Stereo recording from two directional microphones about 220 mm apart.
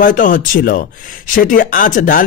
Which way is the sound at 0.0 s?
35° left (ahead or behind).